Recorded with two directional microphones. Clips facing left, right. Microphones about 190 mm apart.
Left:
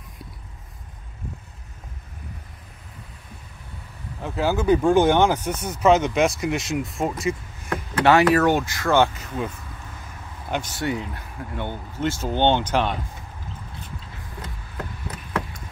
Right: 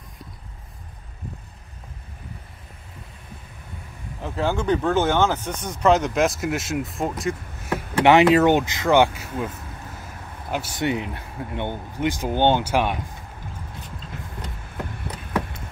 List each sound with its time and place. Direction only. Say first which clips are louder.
4.2 s speech: left 1 dB; 5° left (ahead or behind)
8.0 s speech: right 2 dB; 20° right (ahead or behind)
10.5 s speech: even; 5° right (ahead or behind)
10.8 s speech: right 2 dB; 20° right (ahead or behind)